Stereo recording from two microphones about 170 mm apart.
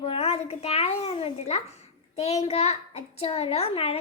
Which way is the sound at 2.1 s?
40° left (ahead or behind).